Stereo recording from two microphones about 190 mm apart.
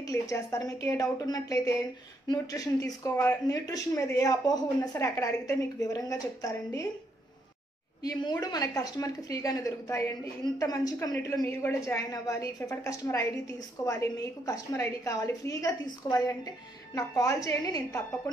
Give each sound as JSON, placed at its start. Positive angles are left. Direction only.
{"t": 0.0, "sound": "speech", "side_deg": 15}
{"t": 8.0, "sound": "speech", "side_deg": 20}